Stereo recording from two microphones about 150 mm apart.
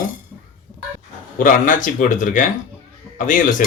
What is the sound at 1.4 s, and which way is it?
Speech, 60° left (ahead or behind).